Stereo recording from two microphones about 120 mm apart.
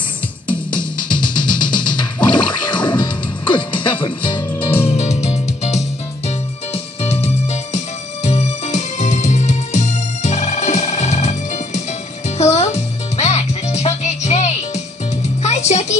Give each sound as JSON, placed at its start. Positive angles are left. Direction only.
{"t": 0.7, "sound": "music", "side_deg": 40}
{"t": 4.8, "sound": "music", "side_deg": 65}